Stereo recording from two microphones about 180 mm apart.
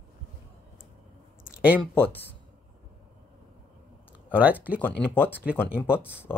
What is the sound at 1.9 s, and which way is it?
Speech, 10° left (ahead or behind).